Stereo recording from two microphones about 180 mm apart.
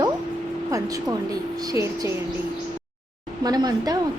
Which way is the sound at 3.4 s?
20° right (ahead or behind).